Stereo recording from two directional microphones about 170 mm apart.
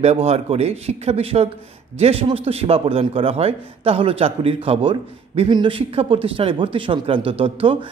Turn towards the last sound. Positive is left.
turn(degrees=-30)  # may be behind; listen again after turning